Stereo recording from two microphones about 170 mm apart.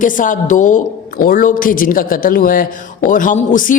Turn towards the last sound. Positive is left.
turn(degrees=50)  # may be behind; listen again after turning